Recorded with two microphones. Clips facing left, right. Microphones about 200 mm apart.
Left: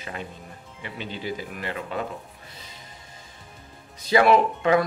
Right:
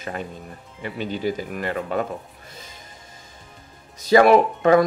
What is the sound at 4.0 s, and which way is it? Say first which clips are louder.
Speech: right 4 dB; 45° right (ahead or behind).